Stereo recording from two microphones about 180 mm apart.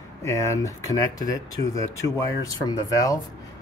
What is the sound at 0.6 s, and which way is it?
Speech, 20° left (ahead or behind).